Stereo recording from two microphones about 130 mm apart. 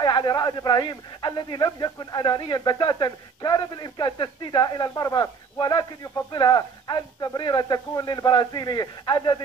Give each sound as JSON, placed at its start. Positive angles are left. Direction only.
{"t": 0.0, "sound": "speech", "side_deg": 35}